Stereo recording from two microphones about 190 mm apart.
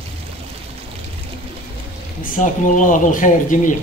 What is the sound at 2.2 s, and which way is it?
A man's voice, 45° left (ahead or behind).